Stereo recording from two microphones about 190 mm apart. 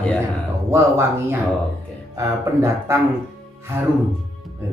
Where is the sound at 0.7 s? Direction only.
15° right (ahead or behind).